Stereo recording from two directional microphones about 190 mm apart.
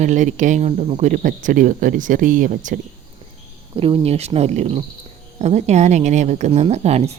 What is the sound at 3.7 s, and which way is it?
Speech, 30° right (ahead or behind).